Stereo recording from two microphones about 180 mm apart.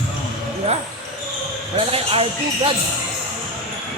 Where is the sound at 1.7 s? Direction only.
30° right (ahead or behind).